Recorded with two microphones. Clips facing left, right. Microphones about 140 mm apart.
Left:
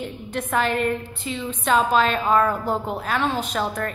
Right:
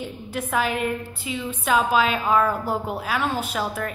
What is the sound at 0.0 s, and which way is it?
A woman's voice, 5° right (ahead or behind).